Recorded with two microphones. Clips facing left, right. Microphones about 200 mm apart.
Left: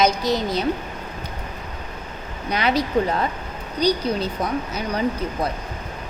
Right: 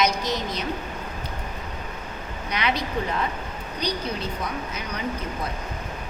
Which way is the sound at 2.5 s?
35° left (ahead or behind).